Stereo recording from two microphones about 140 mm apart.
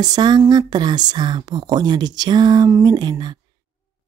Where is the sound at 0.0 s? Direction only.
30° right (ahead or behind).